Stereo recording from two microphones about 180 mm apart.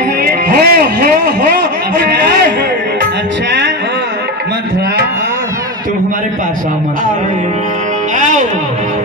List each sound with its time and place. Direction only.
0.2 s music: 55° right (ahead or behind)
8.2 s music: 40° right (ahead or behind)